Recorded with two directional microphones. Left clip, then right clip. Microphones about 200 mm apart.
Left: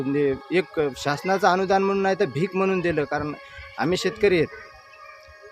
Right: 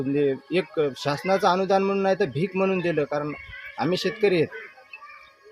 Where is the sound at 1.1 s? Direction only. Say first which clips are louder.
Left 2 dB; 10° left (ahead or behind).